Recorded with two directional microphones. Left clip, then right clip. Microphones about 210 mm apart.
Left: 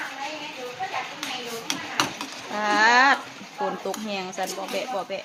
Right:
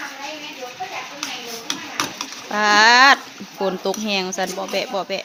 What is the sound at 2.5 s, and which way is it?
Speech, 40° right (ahead or behind).